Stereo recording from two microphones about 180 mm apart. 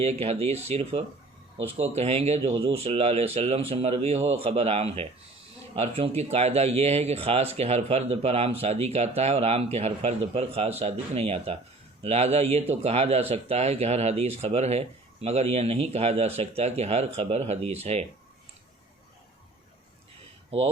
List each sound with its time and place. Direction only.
0.0 s speech: 35° right (ahead or behind)
20.5 s speech: 35° right (ahead or behind)